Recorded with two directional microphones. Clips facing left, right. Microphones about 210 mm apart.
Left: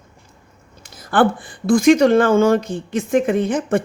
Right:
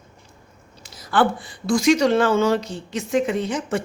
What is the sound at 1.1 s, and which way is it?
Speech, 50° left (ahead or behind).